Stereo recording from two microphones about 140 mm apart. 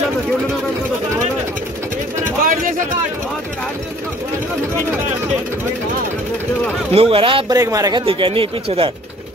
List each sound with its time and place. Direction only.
2.4 s a sound: 75° right (ahead or behind)
6.9 s speech: 40° right (ahead or behind)
7.5 s speech: 25° right (ahead or behind)
8.0 s speech: 40° right (ahead or behind)